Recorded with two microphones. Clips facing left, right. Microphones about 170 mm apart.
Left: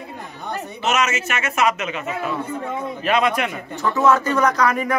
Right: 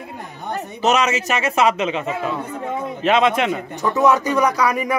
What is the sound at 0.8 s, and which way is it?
A man's voice, 30° right (ahead or behind).